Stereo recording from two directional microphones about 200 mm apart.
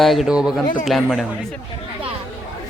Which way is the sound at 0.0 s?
Centre (ahead or behind).